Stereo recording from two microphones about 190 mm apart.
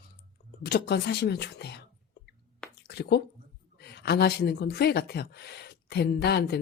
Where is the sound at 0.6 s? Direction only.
55° left (ahead or behind).